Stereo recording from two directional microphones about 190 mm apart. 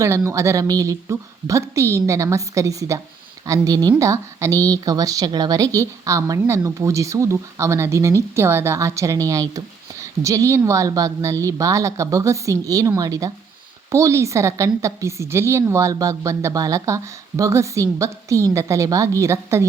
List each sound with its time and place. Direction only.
0.3 s a woman's voice: 15° right (ahead or behind)